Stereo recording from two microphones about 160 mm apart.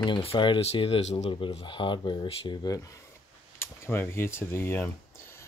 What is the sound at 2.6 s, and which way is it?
Speech, 25° left (ahead or behind).